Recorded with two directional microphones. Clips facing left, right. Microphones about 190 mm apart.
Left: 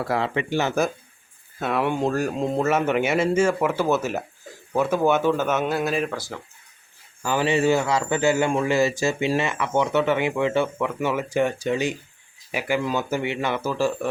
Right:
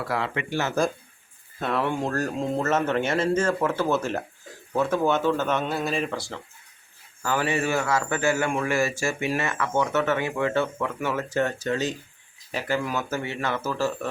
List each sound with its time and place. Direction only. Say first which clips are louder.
0.0 s speech: left 4 dB; 25° left (ahead or behind)
1.5 s speech: left 2 dB; 5° left (ahead or behind)
1.8 s a man's voice: left 5 dB; 15° left (ahead or behind)
7.2 s a man's voice: left 4 dB; 20° left (ahead or behind)